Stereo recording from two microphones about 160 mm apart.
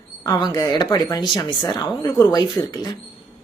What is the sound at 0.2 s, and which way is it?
Speech, 25° left (ahead or behind).